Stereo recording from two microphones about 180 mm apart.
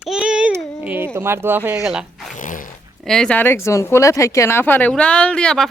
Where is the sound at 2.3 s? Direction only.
45° left (ahead or behind).